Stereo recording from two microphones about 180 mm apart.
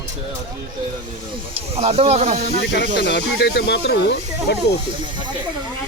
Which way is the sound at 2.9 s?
70° left (ahead or behind).